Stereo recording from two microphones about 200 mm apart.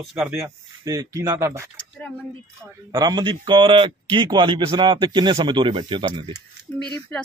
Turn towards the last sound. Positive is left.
turn(degrees=-25)  # may be behind; listen again after turning